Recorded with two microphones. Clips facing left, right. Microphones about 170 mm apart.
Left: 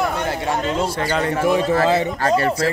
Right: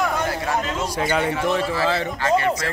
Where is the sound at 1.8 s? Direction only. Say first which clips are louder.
Left 5 dB; 20° left (ahead or behind).